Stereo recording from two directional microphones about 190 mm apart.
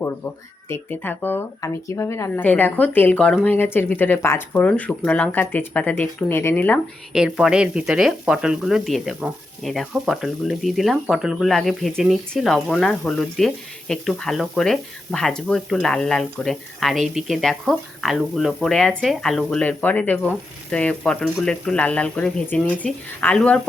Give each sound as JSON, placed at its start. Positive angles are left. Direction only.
{"t": 0.7, "sound": "speech", "side_deg": 10}
{"t": 7.1, "sound": "speech", "side_deg": -5}